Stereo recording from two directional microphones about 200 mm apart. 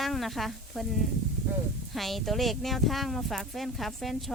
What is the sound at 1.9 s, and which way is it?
Speech, centre (ahead or behind).